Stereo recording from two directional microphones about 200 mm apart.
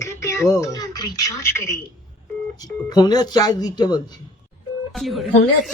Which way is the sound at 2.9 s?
20° left (ahead or behind).